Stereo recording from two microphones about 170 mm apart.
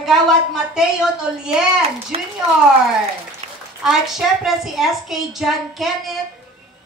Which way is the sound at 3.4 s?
40° right (ahead or behind).